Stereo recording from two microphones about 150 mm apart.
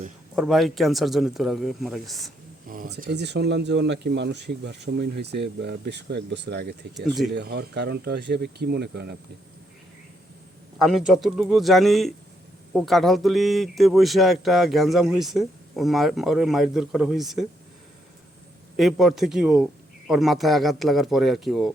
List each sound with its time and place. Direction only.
0.3 s speech: centre (ahead or behind)
2.6 s speech: 70° right (ahead or behind); by 6.7 s 90° right
6.9 s speech: centre (ahead or behind)
7.3 s speech: 90° right
10.8 s speech: centre (ahead or behind)
18.8 s speech: centre (ahead or behind)